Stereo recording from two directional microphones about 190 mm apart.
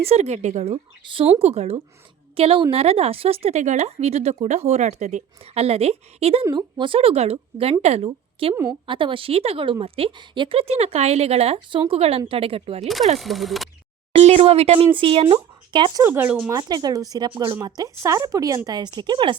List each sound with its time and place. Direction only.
0.0 s a woman's voice: 35° right (ahead or behind)
13.1 s speech: centre (ahead or behind)
14.2 s speech: 30° right (ahead or behind)
16.0 s speech: 10° right (ahead or behind)
16.6 s a woman's voice: 20° right (ahead or behind)